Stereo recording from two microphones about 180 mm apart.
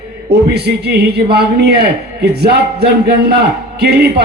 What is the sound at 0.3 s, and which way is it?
A man's voice, 65° right (ahead or behind).